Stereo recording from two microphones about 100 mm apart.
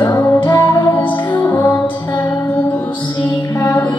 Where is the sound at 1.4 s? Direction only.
20° left (ahead or behind).